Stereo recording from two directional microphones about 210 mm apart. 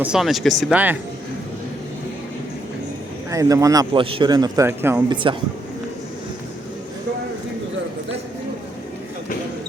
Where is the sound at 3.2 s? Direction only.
15° right (ahead or behind).